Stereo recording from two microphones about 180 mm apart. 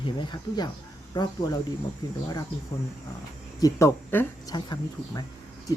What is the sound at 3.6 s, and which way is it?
Speech, 20° left (ahead or behind).